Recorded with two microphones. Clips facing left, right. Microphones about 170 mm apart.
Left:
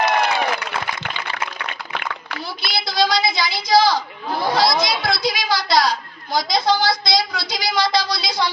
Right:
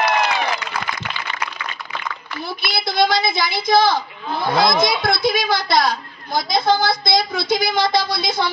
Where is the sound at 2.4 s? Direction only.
50° right (ahead or behind).